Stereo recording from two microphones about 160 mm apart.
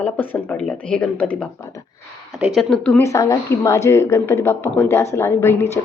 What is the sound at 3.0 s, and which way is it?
A woman's voice, 20° left (ahead or behind).